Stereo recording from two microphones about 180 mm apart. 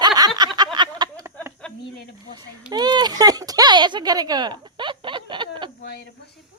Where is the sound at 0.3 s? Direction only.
25° right (ahead or behind).